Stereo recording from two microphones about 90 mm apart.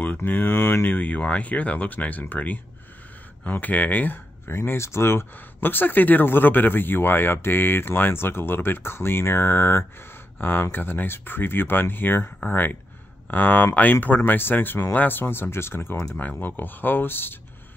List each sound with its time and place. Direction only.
0.0 s speech: 20° left (ahead or behind)